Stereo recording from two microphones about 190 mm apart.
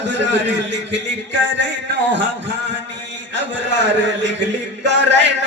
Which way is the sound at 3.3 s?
70° right (ahead or behind).